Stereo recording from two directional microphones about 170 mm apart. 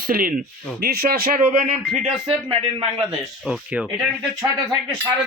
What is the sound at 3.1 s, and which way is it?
Speech, centre (ahead or behind).